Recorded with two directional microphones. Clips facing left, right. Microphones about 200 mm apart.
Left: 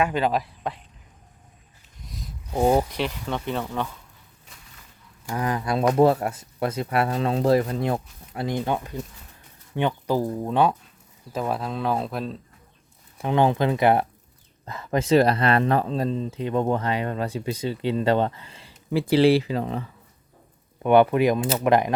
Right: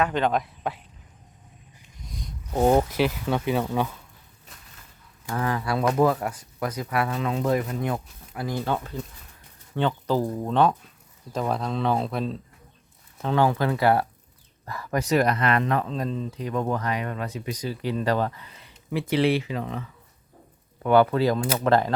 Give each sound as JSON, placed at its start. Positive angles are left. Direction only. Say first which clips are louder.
{"t": 0.0, "sound": "speech", "louder": "left 1 dB", "side_deg": 5}
{"t": 2.0, "sound": "a sound", "louder": "right 1 dB", "side_deg": 0}
{"t": 2.9, "sound": "speech", "louder": "right 4 dB", "side_deg": -5}
{"t": 5.3, "sound": "speech", "louder": "left 1 dB", "side_deg": 15}
{"t": 13.1, "sound": "speech", "louder": "left 2 dB", "side_deg": 15}
{"t": 20.8, "sound": "speech", "louder": "left 2 dB", "side_deg": 20}